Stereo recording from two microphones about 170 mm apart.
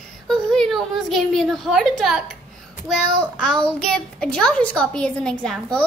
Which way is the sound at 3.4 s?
5° left (ahead or behind).